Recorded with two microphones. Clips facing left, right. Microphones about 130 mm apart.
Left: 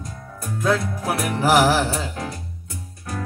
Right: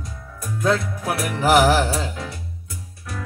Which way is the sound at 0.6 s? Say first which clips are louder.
Even; centre (ahead or behind).